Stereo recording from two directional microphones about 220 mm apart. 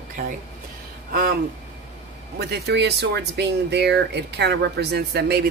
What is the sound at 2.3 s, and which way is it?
Speech, 50° right (ahead or behind).